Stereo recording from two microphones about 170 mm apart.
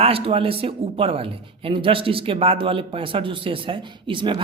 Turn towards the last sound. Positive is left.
turn(degrees=-30)  # may be behind; listen again after turning